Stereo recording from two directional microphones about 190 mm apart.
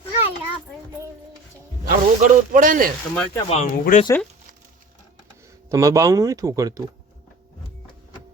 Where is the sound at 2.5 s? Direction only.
45° right (ahead or behind).